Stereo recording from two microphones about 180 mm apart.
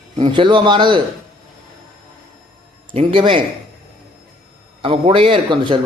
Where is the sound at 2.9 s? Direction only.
30° right (ahead or behind).